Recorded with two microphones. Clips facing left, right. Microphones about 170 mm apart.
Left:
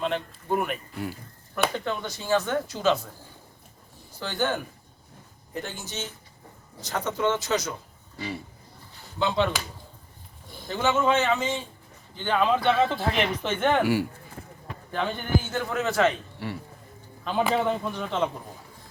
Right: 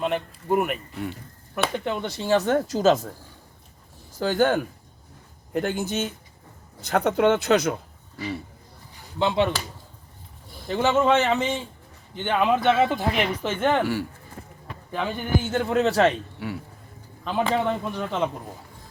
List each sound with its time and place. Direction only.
0.0 s speech: 5° right (ahead or behind)
1.8 s a man's voice: 25° right (ahead or behind)
2.2 s speech: 35° right (ahead or behind)
4.2 s speech: 45° right (ahead or behind)
9.1 s a man's voice: 20° right (ahead or behind)
10.7 s a man's voice: 30° right (ahead or behind); by 13.8 s 5° right (ahead or behind)
13.8 s speech: 10° left (ahead or behind)
14.9 s speech: 5° right (ahead or behind)
15.5 s speech: 30° right (ahead or behind)
16.4 s speech: centre (ahead or behind)